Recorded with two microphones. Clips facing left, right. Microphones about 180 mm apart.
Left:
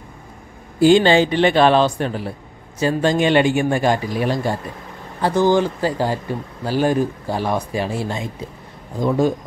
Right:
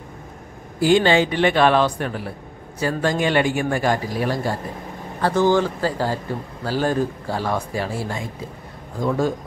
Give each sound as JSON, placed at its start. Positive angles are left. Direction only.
{"t": 0.7, "sound": "speech", "side_deg": 25}